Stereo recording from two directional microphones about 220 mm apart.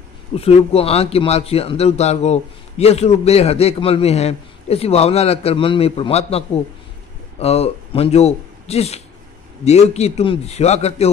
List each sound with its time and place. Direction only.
0.4 s a man's voice: 25° left (ahead or behind)